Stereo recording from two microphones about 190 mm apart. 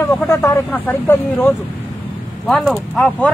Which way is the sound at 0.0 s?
10° left (ahead or behind).